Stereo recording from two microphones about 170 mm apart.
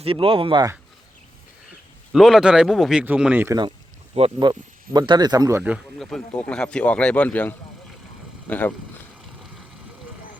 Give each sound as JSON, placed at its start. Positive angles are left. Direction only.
{"t": 0.0, "sound": "speech", "side_deg": -30}
{"t": 2.1, "sound": "speech", "side_deg": 0}
{"t": 4.1, "sound": "speech", "side_deg": -30}
{"t": 5.7, "sound": "speech", "side_deg": 0}